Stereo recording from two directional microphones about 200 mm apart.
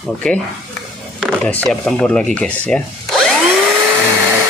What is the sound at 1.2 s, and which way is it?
Speech, 5° left (ahead or behind).